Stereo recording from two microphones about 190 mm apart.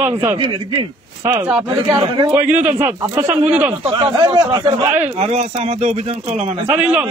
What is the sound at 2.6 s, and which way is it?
Speech, 10° right (ahead or behind).